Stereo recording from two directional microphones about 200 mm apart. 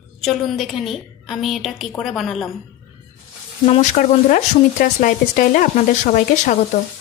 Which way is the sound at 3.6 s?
40° left (ahead or behind).